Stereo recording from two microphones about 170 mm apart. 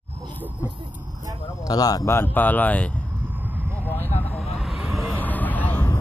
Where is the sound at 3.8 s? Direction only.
10° left (ahead or behind).